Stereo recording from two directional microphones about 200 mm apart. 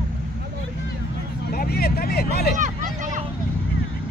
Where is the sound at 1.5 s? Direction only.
50° left (ahead or behind).